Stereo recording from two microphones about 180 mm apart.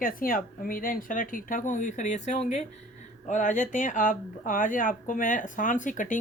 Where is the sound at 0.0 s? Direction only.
50° left (ahead or behind).